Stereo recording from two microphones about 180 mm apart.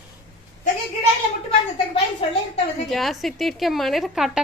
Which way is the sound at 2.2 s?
30° left (ahead or behind).